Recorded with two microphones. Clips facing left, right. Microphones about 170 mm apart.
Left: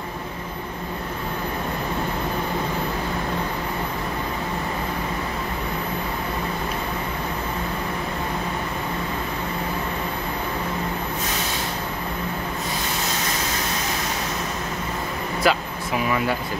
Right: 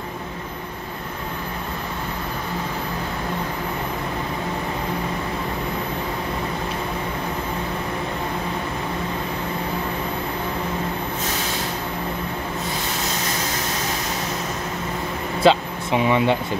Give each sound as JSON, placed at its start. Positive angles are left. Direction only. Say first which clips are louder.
{"t": 15.4, "sound": "vehicle", "louder": "right 5 dB", "side_deg": -25}